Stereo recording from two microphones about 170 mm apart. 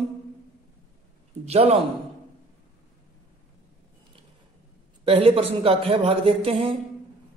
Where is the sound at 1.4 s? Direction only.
35° right (ahead or behind).